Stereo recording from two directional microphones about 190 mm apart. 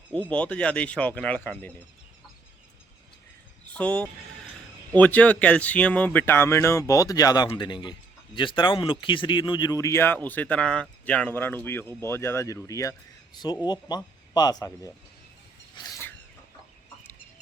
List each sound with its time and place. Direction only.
0.1 s speech: 5° left (ahead or behind)
3.8 s speech: 5° left (ahead or behind)
15.7 s a sound: 15° left (ahead or behind)